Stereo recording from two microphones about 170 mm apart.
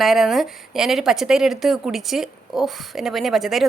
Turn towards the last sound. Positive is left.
turn(degrees=0)  # may be behind; listen again after turning